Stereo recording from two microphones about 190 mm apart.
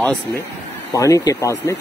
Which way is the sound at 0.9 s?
15° left (ahead or behind).